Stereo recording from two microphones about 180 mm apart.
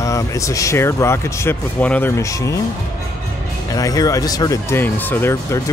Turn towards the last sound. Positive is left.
turn(degrees=15)  # may be behind; listen again after turning